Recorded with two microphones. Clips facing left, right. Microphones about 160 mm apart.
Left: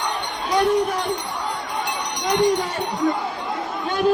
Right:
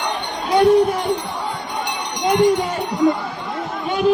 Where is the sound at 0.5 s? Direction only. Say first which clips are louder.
Right 6 dB; 30° right (ahead or behind).